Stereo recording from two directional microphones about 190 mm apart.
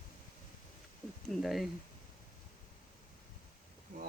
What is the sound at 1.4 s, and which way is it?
Speech, centre (ahead or behind).